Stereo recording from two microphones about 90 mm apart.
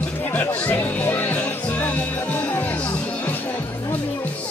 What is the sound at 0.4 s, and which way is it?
Music, 20° left (ahead or behind).